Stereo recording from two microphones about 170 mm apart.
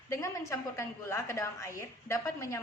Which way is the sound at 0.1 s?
20° left (ahead or behind).